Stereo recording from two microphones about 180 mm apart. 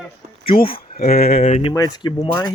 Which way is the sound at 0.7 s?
55° left (ahead or behind).